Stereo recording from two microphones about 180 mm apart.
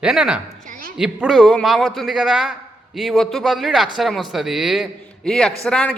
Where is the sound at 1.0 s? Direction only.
5° right (ahead or behind).